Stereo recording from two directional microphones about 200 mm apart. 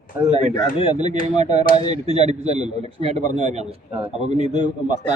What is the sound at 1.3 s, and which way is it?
A man's voice, 35° right (ahead or behind).